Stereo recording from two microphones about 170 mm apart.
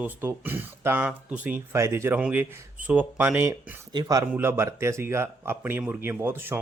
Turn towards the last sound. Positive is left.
turn(degrees=-15)  # may be behind; listen again after turning